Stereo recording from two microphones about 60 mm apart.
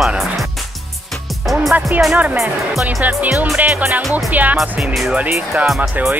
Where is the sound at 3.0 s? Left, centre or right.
Right.